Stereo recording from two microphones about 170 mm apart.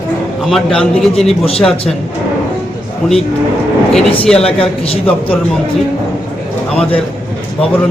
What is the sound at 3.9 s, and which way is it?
Speech, 5° left (ahead or behind).